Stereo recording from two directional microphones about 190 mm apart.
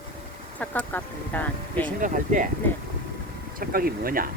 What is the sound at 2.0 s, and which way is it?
Speech, 45° right (ahead or behind).